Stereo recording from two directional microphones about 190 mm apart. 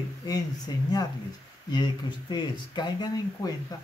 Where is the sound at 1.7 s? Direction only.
25° left (ahead or behind).